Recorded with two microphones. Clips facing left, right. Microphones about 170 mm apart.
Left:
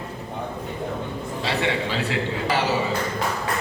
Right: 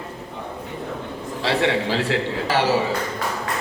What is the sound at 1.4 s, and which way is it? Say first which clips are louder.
Speech: right 4 dB; 70° right (ahead or behind).